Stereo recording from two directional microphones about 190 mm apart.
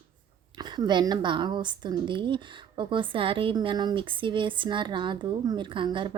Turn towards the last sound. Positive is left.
turn(degrees=-25)  # may be behind; listen again after turning